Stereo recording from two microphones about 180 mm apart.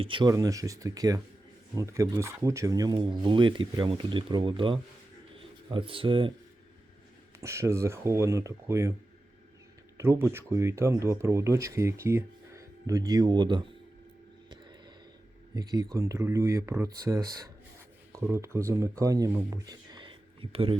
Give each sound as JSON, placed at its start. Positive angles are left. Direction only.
{"t": 0.0, "sound": "speech", "side_deg": -25}
{"t": 7.4, "sound": "speech", "side_deg": -15}
{"t": 10.0, "sound": "speech", "side_deg": -15}
{"t": 15.5, "sound": "speech", "side_deg": -20}